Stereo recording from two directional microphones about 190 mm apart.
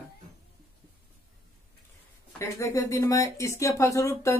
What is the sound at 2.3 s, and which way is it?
Speech, 15° left (ahead or behind).